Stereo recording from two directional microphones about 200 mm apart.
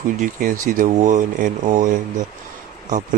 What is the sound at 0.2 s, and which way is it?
Speech, 45° right (ahead or behind).